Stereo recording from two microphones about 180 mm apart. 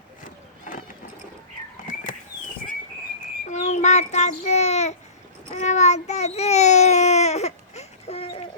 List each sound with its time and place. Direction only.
1.9 s a sound: 45° left (ahead or behind)
3.5 s child singing: 40° left (ahead or behind)
5.5 s a child's voice: 40° left (ahead or behind)